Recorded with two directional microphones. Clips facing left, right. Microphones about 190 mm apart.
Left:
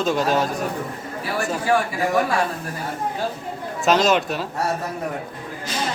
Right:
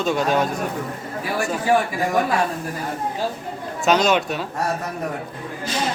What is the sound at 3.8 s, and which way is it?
Speech, centre (ahead or behind).